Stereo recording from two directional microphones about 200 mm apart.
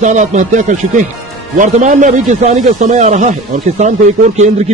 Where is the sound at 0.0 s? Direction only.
35° right (ahead or behind).